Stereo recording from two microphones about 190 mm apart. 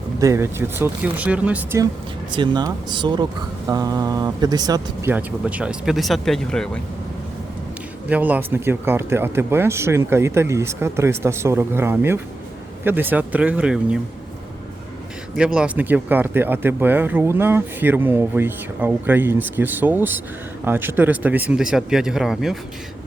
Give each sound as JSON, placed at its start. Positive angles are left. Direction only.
{"t": 0.2, "sound": "speech", "side_deg": -15}
{"t": 2.3, "sound": "speech", "side_deg": -25}
{"t": 5.1, "sound": "speech", "side_deg": -5}
{"t": 8.1, "sound": "speech", "side_deg": -10}
{"t": 15.4, "sound": "speech", "side_deg": -5}